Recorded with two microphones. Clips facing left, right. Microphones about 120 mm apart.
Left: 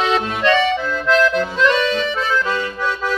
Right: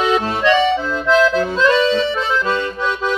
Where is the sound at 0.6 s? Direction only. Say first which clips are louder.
Right 2 dB; 25° right (ahead or behind).